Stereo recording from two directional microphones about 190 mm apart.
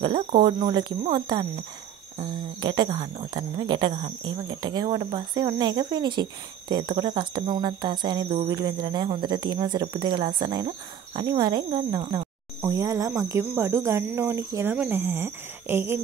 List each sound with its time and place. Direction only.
0.4 s speech: 25° right (ahead or behind)